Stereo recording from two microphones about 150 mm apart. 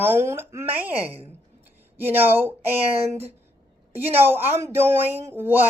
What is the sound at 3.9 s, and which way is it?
A woman's voice, 15° right (ahead or behind).